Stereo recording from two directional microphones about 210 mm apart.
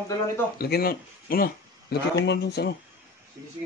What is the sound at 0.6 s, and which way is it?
Speech, 45° left (ahead or behind).